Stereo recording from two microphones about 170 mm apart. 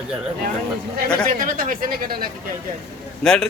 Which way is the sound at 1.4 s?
55° right (ahead or behind).